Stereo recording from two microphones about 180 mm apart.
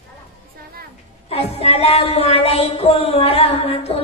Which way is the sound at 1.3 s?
35° left (ahead or behind).